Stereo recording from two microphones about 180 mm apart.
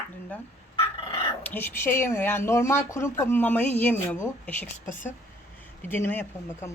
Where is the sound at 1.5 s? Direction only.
10° left (ahead or behind).